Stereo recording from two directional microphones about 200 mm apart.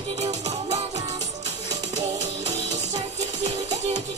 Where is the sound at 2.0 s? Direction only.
35° right (ahead or behind).